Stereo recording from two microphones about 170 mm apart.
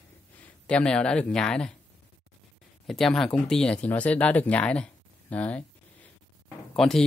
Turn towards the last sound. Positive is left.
turn(degrees=5)  # may be behind; listen again after turning